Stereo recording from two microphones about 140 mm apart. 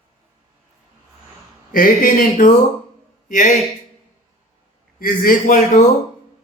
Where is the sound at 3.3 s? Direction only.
65° left (ahead or behind).